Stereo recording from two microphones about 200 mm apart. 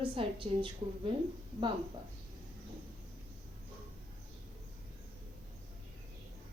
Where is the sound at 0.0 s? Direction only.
25° right (ahead or behind).